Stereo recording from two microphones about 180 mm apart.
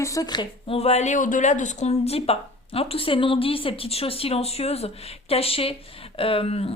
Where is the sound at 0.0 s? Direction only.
20° left (ahead or behind).